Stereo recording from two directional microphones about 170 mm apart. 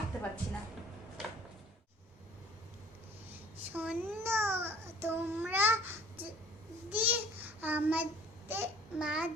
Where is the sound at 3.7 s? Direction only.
10° right (ahead or behind).